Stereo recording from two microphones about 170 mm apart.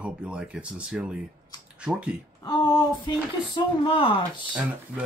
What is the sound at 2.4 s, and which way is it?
Speech, 25° left (ahead or behind).